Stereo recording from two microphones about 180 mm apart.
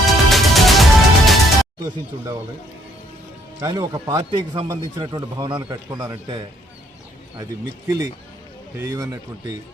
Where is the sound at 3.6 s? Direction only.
20° right (ahead or behind).